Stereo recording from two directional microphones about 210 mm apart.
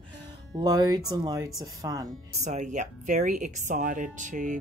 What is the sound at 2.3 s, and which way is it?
Speech, 35° right (ahead or behind).